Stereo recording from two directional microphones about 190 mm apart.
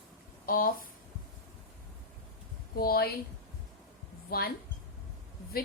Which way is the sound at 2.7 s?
50° left (ahead or behind).